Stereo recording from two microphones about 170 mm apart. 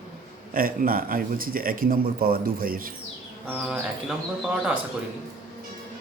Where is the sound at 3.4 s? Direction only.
5° right (ahead or behind).